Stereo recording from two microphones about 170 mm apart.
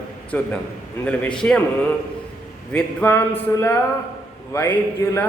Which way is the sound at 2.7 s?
10° left (ahead or behind).